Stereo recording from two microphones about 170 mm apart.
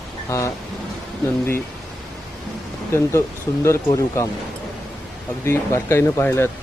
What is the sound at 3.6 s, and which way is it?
Speech, 15° left (ahead or behind).